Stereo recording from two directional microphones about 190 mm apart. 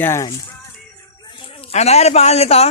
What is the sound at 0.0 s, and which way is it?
Speech, 15° left (ahead or behind).